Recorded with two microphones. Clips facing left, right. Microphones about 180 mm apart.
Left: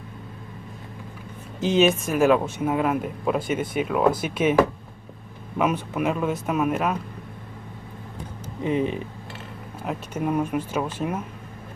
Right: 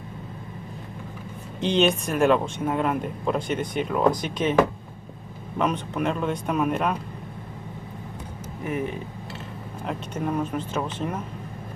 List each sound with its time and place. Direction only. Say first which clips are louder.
1.6 s speech: left 2 dB; 5° left (ahead or behind)
8.6 s speech: left 5 dB; 20° left (ahead or behind)
9.8 s speech: left 2 dB; 5° left (ahead or behind)